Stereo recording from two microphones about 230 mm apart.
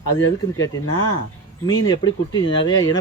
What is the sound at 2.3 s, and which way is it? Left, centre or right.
Speech, centre.